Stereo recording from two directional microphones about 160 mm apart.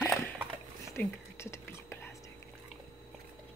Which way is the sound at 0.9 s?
15° left (ahead or behind).